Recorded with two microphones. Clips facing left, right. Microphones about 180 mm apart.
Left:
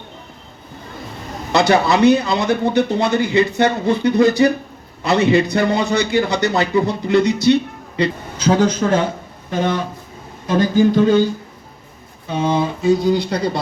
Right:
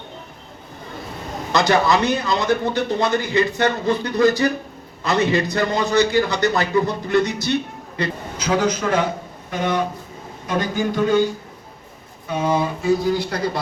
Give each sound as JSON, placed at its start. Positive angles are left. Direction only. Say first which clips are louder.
{"t": 1.5, "sound": "speech", "louder": "left 3 dB", "side_deg": 15}
{"t": 8.4, "sound": "speech", "louder": "left 5 dB", "side_deg": 30}
{"t": 10.4, "sound": "speech", "louder": "left 8 dB", "side_deg": 25}
{"t": 12.3, "sound": "speech", "louder": "left 2 dB", "side_deg": 25}